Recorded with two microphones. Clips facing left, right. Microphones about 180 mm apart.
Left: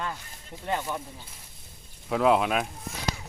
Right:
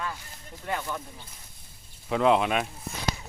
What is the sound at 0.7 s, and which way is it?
Speech, 20° left (ahead or behind).